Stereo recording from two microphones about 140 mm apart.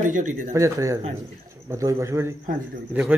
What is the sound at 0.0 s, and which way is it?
Speech, 65° right (ahead or behind).